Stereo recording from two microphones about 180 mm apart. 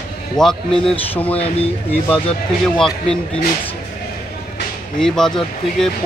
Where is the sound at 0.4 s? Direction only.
5° left (ahead or behind).